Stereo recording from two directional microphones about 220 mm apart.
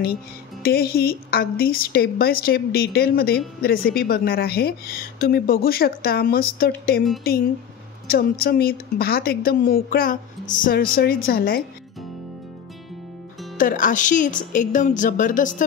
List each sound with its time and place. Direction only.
0.6 s a woman's voice: 45° left (ahead or behind)
8.1 s a woman's voice: 45° left (ahead or behind)
13.6 s a woman's voice: 35° left (ahead or behind)